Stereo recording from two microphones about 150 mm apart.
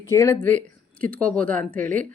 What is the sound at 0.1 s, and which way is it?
Speech, 20° left (ahead or behind).